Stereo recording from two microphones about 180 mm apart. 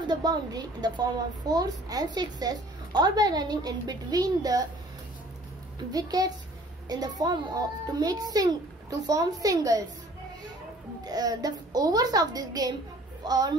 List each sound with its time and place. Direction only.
0.0 s a woman's voice: 25° right (ahead or behind)
5.9 s a woman's voice: 20° right (ahead or behind)
11.1 s a woman's voice: 20° right (ahead or behind)